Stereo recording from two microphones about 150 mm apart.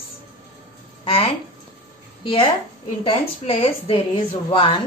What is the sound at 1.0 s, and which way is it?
A woman's voice, 40° left (ahead or behind).